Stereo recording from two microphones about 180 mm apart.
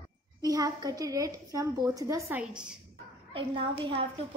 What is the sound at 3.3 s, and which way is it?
Speech, 30° right (ahead or behind).